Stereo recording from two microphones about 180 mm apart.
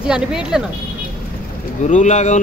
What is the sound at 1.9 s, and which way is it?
Speech, 40° left (ahead or behind).